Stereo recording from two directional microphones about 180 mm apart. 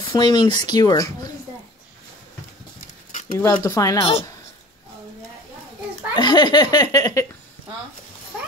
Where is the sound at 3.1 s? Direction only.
45° left (ahead or behind).